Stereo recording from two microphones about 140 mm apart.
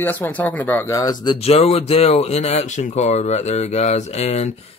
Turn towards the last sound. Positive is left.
turn(degrees=50)  # may be behind; listen again after turning